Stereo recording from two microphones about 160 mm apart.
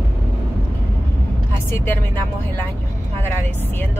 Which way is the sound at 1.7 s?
15° left (ahead or behind).